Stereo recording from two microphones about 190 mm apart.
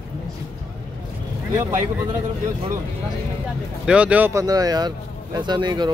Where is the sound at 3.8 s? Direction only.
5° right (ahead or behind); by 5.9 s 25° right (ahead or behind).